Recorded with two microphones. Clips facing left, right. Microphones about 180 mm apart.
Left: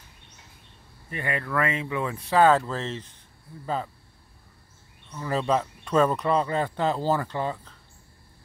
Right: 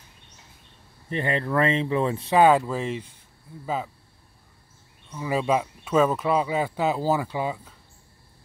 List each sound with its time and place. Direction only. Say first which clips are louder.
1.1 s speech: right 4 dB; 30° right (ahead or behind); by 3.9 s 5° right (ahead or behind)
5.1 s speech: right 1 dB; 10° right (ahead or behind)